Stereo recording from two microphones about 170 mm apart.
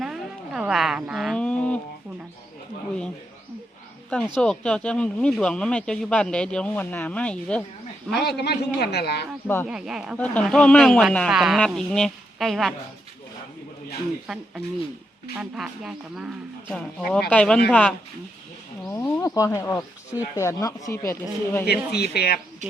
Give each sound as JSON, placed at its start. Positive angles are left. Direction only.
{"t": 0.0, "sound": "a sound", "side_deg": -5}
{"t": 4.4, "sound": "speech", "side_deg": 5}
{"t": 8.1, "sound": "speech", "side_deg": 75}
{"t": 9.6, "sound": "speech", "side_deg": -5}
{"t": 15.4, "sound": "speech", "side_deg": 0}
{"t": 21.7, "sound": "speech", "side_deg": 70}